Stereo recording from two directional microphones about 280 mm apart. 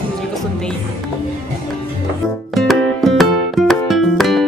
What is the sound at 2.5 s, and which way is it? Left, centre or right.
Music, centre.